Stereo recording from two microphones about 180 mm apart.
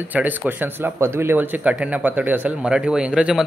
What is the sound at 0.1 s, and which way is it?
A man's voice, 10° right (ahead or behind).